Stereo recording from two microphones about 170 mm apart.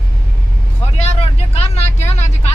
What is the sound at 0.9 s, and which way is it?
Vehicle, 40° left (ahead or behind).